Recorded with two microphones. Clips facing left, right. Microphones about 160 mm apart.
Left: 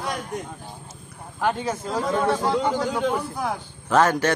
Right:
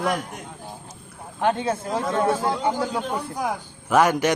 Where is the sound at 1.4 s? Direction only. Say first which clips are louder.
Right 2 dB; 25° right (ahead or behind).